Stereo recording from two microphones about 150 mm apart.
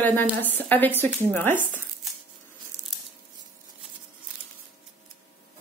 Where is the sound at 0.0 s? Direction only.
10° left (ahead or behind).